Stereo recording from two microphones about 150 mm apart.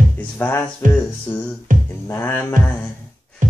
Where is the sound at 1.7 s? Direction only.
65° right (ahead or behind).